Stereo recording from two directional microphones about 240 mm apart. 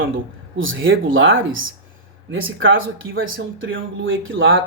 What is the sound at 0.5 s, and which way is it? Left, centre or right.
Speech, right.